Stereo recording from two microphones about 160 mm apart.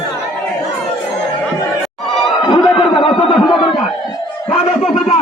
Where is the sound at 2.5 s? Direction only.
30° left (ahead or behind).